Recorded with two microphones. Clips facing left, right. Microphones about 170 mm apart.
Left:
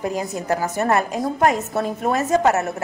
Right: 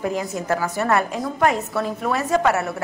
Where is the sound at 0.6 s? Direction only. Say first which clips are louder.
Left 1 dB; 40° left (ahead or behind).